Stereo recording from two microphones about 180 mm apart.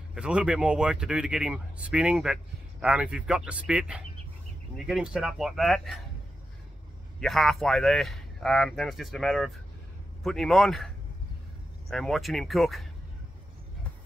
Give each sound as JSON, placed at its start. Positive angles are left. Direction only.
{"t": 0.1, "sound": "speech", "side_deg": -5}
{"t": 7.2, "sound": "speech", "side_deg": 0}
{"t": 11.9, "sound": "speech", "side_deg": 0}